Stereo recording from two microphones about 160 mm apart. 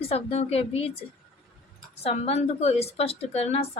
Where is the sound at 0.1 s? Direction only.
40° left (ahead or behind).